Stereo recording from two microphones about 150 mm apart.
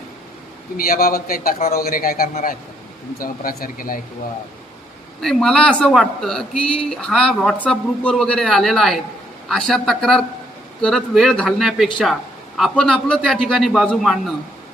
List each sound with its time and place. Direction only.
0.9 s a man's voice: 80° left
5.2 s speech: 5° left (ahead or behind)